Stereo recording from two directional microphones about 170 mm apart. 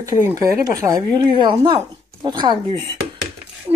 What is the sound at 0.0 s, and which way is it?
A woman's voice, 20° right (ahead or behind).